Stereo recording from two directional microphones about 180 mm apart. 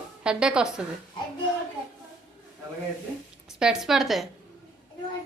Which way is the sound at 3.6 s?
5° right (ahead or behind).